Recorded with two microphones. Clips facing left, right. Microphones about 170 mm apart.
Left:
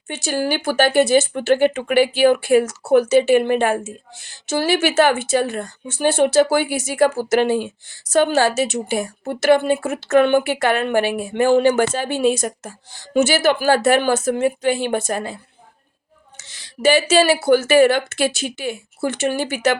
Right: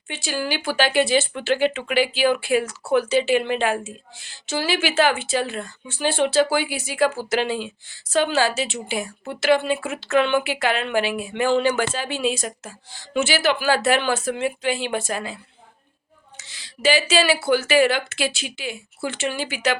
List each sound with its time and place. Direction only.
0.1 s a woman's voice: 45° left (ahead or behind)
16.8 s a woman's voice: 45° left (ahead or behind)